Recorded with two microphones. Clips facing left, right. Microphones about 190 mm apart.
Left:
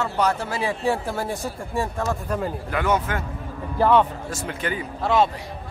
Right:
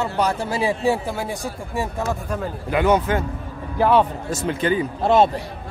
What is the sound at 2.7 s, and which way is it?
Speech, 20° right (ahead or behind).